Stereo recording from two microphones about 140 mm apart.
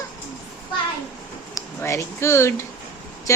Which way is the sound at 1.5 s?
20° left (ahead or behind).